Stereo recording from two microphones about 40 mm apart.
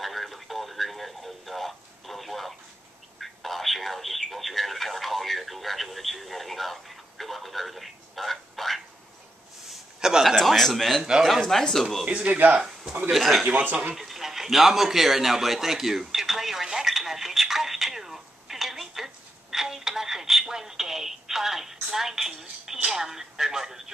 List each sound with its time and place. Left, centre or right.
0.0 s a sound: centre
3.2 s telephone: centre
9.9 s a sound: centre
10.4 s a man's voice: centre
12.1 s speech: right
12.5 s speech: centre
13.1 s a man's voice: centre
16.8 s telephone: centre
22.8 s a sound: centre